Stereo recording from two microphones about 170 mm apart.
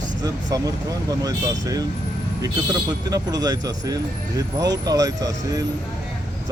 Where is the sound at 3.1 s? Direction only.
20° right (ahead or behind).